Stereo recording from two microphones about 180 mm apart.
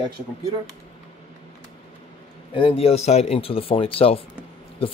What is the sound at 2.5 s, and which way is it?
Speech, 30° left (ahead or behind).